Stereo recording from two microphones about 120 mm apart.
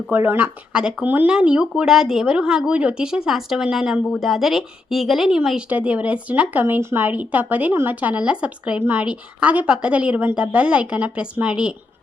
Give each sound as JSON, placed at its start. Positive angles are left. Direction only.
{"t": 0.1, "sound": "speech", "side_deg": -15}